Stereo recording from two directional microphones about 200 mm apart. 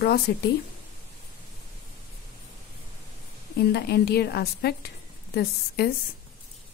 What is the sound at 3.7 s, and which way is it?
A woman's voice, 55° left (ahead or behind).